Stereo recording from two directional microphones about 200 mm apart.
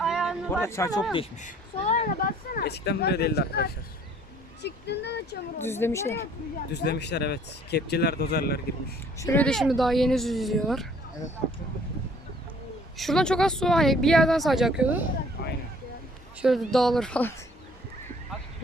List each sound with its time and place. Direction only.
0.0 s a sound: centre (ahead or behind)
0.5 s a woman's voice: 15° left (ahead or behind)
1.1 s speech: 35° left (ahead or behind); by 5.4 s 60° left (ahead or behind)
5.5 s a woman's voice: 10° left (ahead or behind)
6.7 s speech: 55° left (ahead or behind)
9.1 s speech: 15° left (ahead or behind)
13.0 s speech: centre (ahead or behind)
16.4 s speech: centre (ahead or behind)